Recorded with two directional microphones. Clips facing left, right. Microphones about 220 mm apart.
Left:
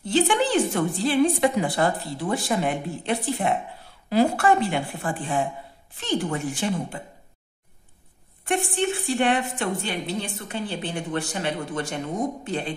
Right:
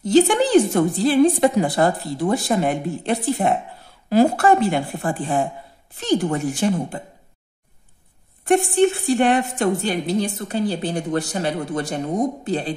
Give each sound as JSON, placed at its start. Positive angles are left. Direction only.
{"t": 0.0, "sound": "a woman's voice", "side_deg": -40}
{"t": 8.5, "sound": "a woman's voice", "side_deg": -40}